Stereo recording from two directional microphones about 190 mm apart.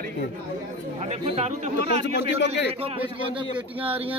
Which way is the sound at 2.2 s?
70° left (ahead or behind).